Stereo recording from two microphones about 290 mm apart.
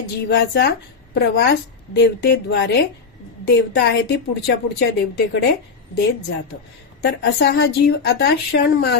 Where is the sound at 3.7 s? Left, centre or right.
Left.